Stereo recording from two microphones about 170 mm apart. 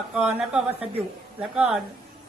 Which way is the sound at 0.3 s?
5° right (ahead or behind).